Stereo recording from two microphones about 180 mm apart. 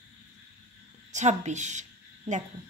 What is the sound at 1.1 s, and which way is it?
Speech, 40° right (ahead or behind).